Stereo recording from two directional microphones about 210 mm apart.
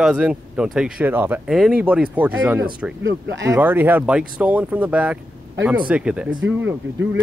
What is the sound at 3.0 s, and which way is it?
Speech, 60° right (ahead or behind).